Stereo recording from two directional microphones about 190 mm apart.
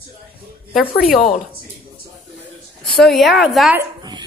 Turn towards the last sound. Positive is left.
turn(degrees=-20)  # may be behind; listen again after turning